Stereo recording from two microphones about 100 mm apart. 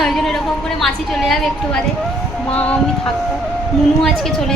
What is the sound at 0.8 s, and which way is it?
A woman's voice, 5° left (ahead or behind).